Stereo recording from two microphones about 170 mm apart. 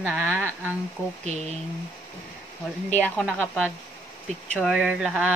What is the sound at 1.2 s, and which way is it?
Speech, 40° right (ahead or behind).